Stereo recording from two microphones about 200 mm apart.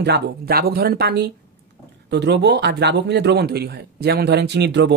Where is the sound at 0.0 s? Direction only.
55° right (ahead or behind).